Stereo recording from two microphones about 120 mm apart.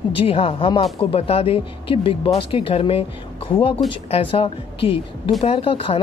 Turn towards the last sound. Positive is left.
turn(degrees=50)  # may be behind; listen again after turning